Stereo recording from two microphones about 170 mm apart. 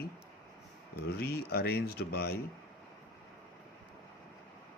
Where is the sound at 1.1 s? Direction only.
65° left (ahead or behind).